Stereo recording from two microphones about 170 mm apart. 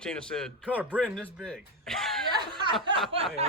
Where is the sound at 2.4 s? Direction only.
25° right (ahead or behind).